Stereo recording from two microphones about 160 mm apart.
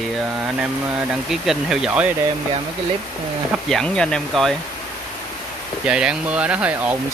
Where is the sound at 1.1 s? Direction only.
5° right (ahead or behind).